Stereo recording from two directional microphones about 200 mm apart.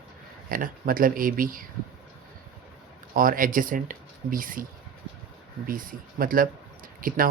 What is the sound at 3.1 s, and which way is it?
Speech, 45° right (ahead or behind).